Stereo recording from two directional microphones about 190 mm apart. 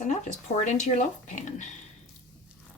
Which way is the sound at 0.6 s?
40° left (ahead or behind).